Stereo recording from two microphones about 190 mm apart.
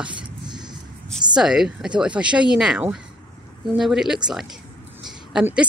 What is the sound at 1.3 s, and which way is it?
A woman's voice, 5° right (ahead or behind).